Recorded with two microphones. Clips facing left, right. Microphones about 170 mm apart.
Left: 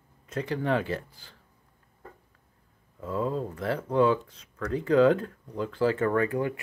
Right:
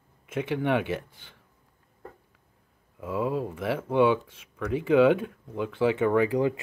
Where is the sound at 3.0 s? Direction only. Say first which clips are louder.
Right 1 dB; 5° right (ahead or behind).